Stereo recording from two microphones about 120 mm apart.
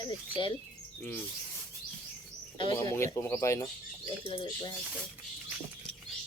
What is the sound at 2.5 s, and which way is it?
Speech, 45° left (ahead or behind).